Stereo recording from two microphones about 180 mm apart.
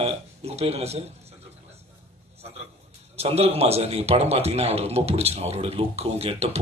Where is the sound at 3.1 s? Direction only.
35° right (ahead or behind).